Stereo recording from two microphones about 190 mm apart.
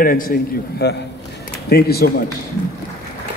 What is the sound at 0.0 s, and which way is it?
A man's voice, 50° left (ahead or behind).